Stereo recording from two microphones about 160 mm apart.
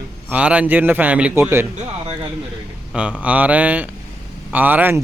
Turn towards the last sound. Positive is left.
turn(degrees=-10)  # may be behind; listen again after turning